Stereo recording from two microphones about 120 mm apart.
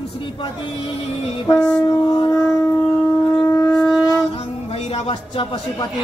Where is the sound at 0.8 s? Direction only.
50° left (ahead or behind).